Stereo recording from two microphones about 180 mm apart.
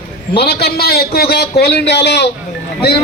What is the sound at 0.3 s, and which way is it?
A man's voice, 60° left (ahead or behind).